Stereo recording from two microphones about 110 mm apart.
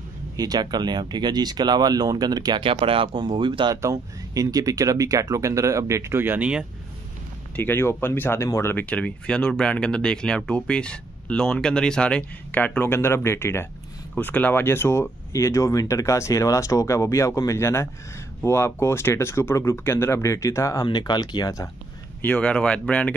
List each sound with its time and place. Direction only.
0.4 s speech: 40° right (ahead or behind)
2.6 s speech: 55° right (ahead or behind)
3.7 s speech: 30° right (ahead or behind); by 6.6 s 15° right (ahead or behind)
7.5 s speech: 20° left (ahead or behind); by 21.6 s 35° left (ahead or behind)
22.2 s speech: 10° left (ahead or behind)